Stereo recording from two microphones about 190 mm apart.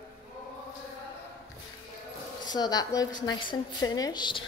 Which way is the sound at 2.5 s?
20° left (ahead or behind).